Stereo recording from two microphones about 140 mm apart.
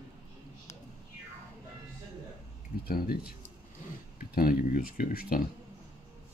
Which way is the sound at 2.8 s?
90° left.